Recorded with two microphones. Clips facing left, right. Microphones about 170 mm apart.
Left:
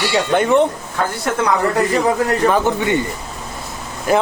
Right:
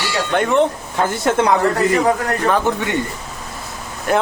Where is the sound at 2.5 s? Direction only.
Centre (ahead or behind).